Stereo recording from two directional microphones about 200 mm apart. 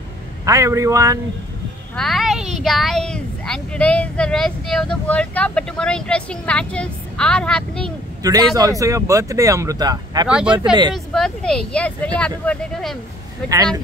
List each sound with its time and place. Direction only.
0.5 s speech: 15° right (ahead or behind)
2.0 s speech: centre (ahead or behind)
8.2 s speech: 20° right (ahead or behind)
10.2 s speech: 5° right (ahead or behind)
10.5 s speech: 25° right (ahead or behind)
11.1 s speech: 5° left (ahead or behind)